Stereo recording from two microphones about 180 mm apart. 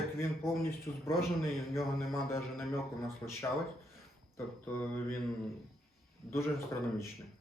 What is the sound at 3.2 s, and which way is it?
Speech, 15° left (ahead or behind).